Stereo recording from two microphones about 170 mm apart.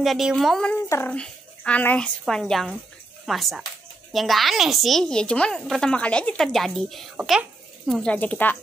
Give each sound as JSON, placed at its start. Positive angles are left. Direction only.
{"t": 0.0, "sound": "a woman's voice", "side_deg": 0}
{"t": 0.8, "sound": "speech", "side_deg": 15}
{"t": 1.1, "sound": "a woman's voice", "side_deg": 5}